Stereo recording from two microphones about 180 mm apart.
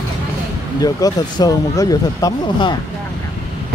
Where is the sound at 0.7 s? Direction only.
20° left (ahead or behind).